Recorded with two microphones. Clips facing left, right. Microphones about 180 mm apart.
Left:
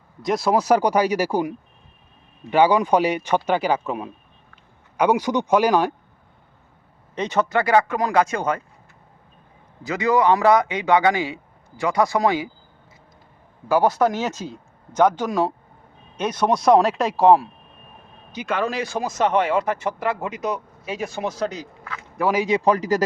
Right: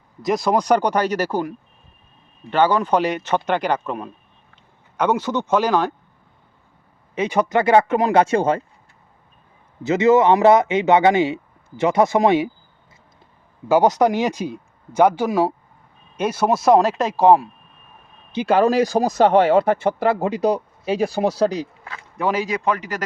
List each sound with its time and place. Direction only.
0.2 s speech: centre (ahead or behind)
7.2 s a man's voice: 10° right (ahead or behind); by 8.6 s 30° right (ahead or behind)
9.8 s a man's voice: 25° right (ahead or behind)
13.7 s speech: 20° right (ahead or behind); by 17.5 s centre (ahead or behind)
18.3 s speech: 30° right (ahead or behind)
22.2 s speech: 10° left (ahead or behind)
22.4 s speech: 30° left (ahead or behind)